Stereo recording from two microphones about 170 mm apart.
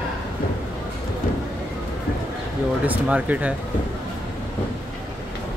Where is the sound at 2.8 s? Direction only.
10° right (ahead or behind).